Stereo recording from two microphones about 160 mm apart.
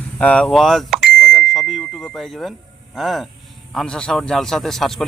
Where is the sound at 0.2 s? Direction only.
10° left (ahead or behind).